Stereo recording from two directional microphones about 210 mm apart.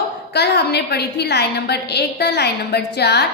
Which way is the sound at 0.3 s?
50° left (ahead or behind).